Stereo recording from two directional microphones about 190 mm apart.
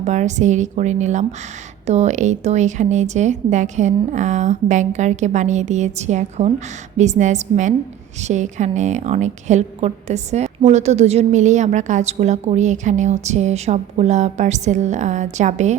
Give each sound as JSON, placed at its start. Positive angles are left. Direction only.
{"t": 0.0, "sound": "a woman's voice", "side_deg": -40}